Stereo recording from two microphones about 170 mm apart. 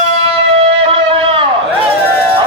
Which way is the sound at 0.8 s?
30° right (ahead or behind).